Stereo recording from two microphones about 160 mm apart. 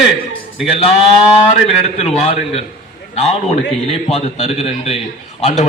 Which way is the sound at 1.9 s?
40° left (ahead or behind).